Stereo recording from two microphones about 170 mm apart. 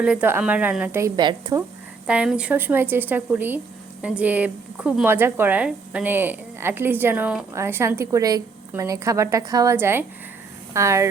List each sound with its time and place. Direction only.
0.0 s speech: 5° right (ahead or behind)
1.1 s speech: 25° right (ahead or behind)
2.0 s speech: 5° right (ahead or behind)